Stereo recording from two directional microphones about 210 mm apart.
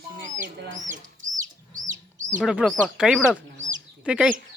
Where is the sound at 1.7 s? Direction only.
35° right (ahead or behind).